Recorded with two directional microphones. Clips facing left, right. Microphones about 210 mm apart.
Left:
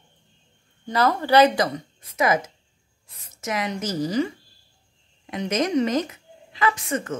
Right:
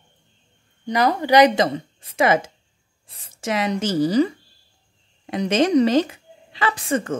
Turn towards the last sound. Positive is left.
turn(degrees=-30)  # may be behind; listen again after turning